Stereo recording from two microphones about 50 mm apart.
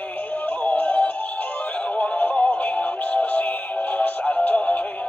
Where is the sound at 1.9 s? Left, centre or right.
Left.